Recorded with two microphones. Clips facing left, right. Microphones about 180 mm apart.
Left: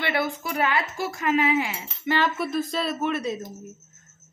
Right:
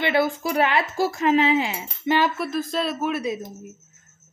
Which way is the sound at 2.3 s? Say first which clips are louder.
Right 1 dB; centre (ahead or behind).